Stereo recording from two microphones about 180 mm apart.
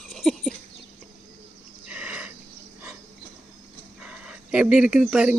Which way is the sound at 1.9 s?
5° right (ahead or behind).